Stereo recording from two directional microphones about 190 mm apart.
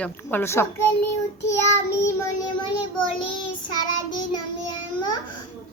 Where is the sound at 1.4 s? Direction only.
15° left (ahead or behind).